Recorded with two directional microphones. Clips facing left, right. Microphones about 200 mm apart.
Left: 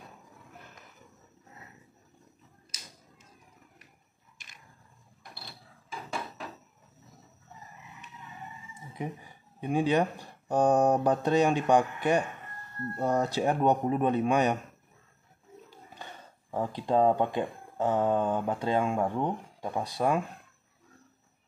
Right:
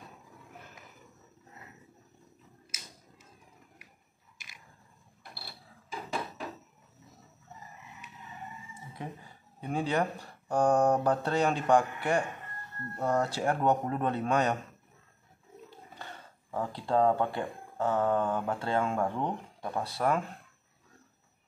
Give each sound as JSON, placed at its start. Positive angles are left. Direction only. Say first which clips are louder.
{"t": 8.9, "sound": "speech", "louder": "left 5 dB", "side_deg": 15}
{"t": 16.0, "sound": "speech", "louder": "left 1 dB", "side_deg": 15}